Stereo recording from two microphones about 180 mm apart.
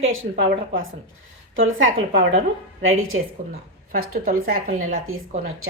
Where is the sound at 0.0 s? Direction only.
90° right.